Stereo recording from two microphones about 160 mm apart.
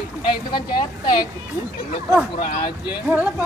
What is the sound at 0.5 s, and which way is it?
Speech, 30° left (ahead or behind).